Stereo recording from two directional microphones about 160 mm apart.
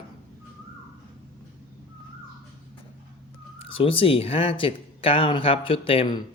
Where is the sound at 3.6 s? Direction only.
35° left (ahead or behind).